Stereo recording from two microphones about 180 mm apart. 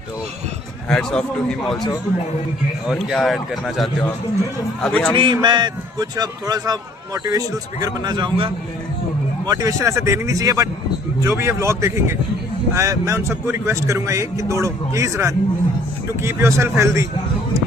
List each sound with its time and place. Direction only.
0.9 s a man's voice: 5° left (ahead or behind)
2.9 s a man's voice: centre (ahead or behind)
5.1 s a man's voice: 25° right (ahead or behind)